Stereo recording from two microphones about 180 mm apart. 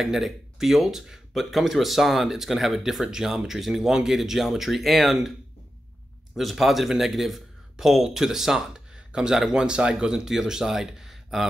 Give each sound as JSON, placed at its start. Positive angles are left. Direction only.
{"t": 0.0, "sound": "speech", "side_deg": 0}
{"t": 6.3, "sound": "speech", "side_deg": 0}